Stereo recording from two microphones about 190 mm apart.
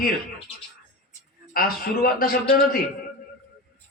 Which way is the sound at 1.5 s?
50° left (ahead or behind).